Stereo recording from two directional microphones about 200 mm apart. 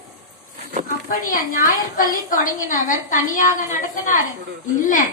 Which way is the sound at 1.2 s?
40° left (ahead or behind).